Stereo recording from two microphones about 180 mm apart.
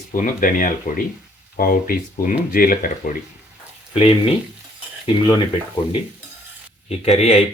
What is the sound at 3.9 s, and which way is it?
Speech, 30° left (ahead or behind).